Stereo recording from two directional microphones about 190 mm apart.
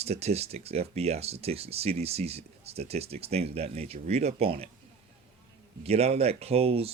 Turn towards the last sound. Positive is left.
turn(degrees=-30)  # may be behind; listen again after turning